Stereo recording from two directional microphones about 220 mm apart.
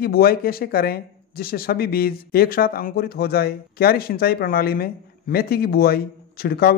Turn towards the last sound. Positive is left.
turn(degrees=45)  # may be behind; listen again after turning